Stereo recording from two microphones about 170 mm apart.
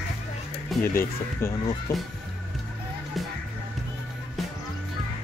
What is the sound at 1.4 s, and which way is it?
Speech, 15° left (ahead or behind).